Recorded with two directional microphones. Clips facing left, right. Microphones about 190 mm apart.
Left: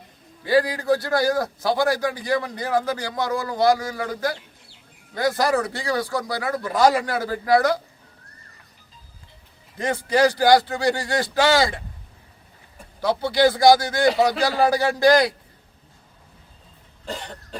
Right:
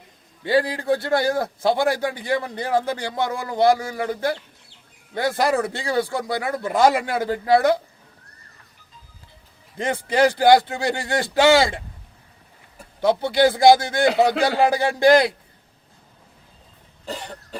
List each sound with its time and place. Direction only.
0.4 s a man's voice: 25° right (ahead or behind)
9.7 s a man's voice: 25° right (ahead or behind)
13.0 s a man's voice: 25° right (ahead or behind)
17.1 s cough: 5° right (ahead or behind)